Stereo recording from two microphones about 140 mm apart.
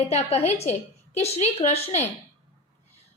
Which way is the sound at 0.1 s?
50° left (ahead or behind).